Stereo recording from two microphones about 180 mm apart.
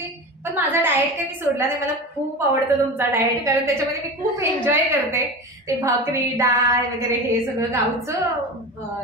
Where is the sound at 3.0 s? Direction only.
15° right (ahead or behind).